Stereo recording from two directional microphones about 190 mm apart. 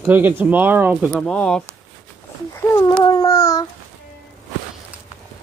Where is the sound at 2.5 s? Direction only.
20° left (ahead or behind).